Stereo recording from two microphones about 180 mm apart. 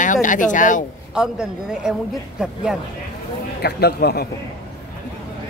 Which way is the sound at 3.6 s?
65° left (ahead or behind).